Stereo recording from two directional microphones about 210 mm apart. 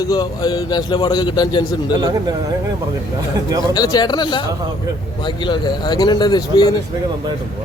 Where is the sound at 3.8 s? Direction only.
20° left (ahead or behind).